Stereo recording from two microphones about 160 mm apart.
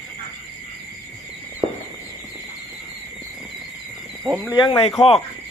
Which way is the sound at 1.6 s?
40° right (ahead or behind).